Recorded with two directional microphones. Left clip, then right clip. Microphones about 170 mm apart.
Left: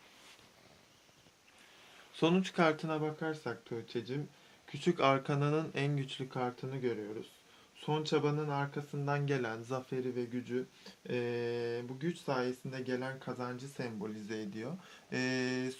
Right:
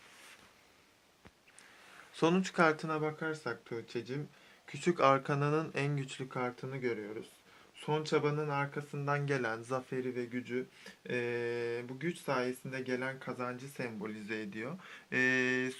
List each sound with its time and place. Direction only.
2.1 s speech: 25° left (ahead or behind)